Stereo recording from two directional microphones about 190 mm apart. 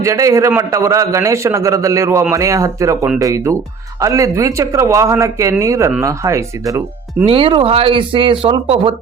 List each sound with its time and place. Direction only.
0.0 s a man's voice: 15° right (ahead or behind)
7.3 s speech: 30° right (ahead or behind)